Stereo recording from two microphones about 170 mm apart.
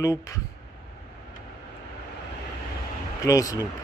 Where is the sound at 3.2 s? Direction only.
20° left (ahead or behind).